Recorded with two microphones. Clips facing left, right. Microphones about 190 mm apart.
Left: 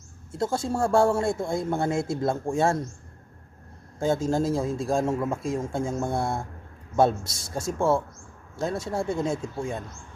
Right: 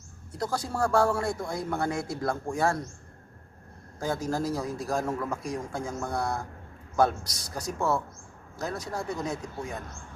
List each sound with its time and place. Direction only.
0.3 s a man's voice: 25° left (ahead or behind)
4.0 s a man's voice: 25° left (ahead or behind)